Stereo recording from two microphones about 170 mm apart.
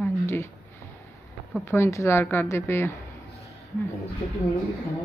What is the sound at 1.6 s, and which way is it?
Speech, 15° left (ahead or behind).